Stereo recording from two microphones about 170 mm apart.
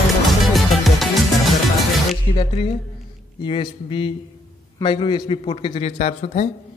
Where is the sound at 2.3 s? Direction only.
35° left (ahead or behind).